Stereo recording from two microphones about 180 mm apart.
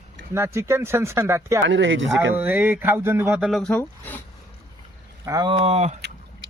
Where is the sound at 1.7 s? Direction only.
90° right.